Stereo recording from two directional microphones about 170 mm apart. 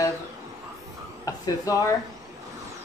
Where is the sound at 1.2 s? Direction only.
20° left (ahead or behind).